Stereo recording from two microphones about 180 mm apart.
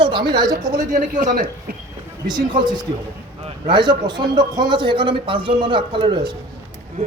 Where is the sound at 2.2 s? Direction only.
25° right (ahead or behind).